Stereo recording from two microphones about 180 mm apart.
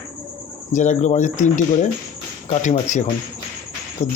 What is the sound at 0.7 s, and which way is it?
Speech, 40° left (ahead or behind).